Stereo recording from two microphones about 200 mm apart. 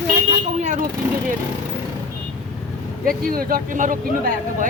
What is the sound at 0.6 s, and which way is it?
Speech, 40° right (ahead or behind).